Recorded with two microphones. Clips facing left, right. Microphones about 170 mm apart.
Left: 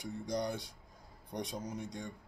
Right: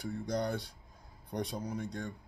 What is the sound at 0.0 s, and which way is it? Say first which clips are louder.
Speech: right 2 dB; 15° left (ahead or behind).